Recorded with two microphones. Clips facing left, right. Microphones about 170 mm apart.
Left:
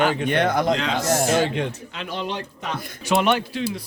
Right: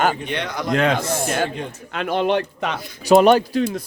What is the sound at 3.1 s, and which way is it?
Speech, 40° right (ahead or behind).